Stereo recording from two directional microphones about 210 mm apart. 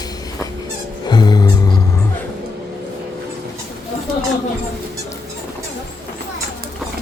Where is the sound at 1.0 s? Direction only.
20° left (ahead or behind).